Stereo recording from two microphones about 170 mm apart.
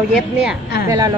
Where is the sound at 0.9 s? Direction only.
20° right (ahead or behind).